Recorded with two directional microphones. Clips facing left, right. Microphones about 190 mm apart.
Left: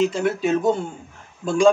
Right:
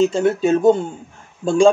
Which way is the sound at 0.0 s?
25° right (ahead or behind).